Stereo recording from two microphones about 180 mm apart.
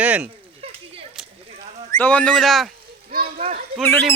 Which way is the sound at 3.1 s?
55° right (ahead or behind).